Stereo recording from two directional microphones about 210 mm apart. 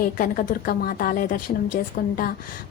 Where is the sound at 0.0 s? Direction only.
40° left (ahead or behind).